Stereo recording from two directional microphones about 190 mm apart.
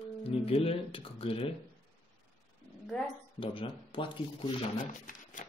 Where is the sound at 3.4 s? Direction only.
25° left (ahead or behind).